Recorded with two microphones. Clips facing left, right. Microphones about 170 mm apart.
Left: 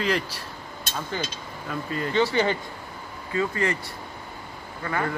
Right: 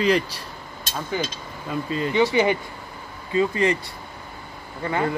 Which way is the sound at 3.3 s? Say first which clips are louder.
Right 5 dB; 20° right (ahead or behind).